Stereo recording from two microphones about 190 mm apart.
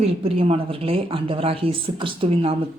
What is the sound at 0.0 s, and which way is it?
Speech, 30° right (ahead or behind).